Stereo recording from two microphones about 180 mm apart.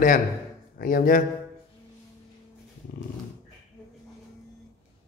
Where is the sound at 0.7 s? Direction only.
50° left (ahead or behind).